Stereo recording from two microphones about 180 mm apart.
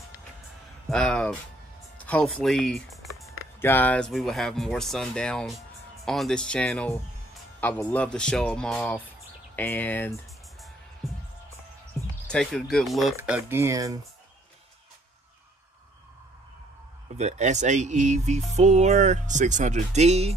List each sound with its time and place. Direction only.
0.8 s speech: 5° left (ahead or behind)
2.0 s music: 5° left (ahead or behind)
2.4 s a sound: 5° left (ahead or behind)
3.3 s speech: 10° left (ahead or behind)
12.3 s speech: 5° left (ahead or behind); by 13.9 s 20° right (ahead or behind)
17.2 s speech: 40° right (ahead or behind)